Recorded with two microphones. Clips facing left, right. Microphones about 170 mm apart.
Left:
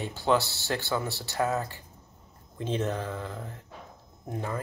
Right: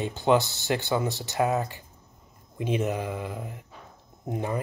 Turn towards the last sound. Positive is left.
turn(degrees=-20)  # may be behind; listen again after turning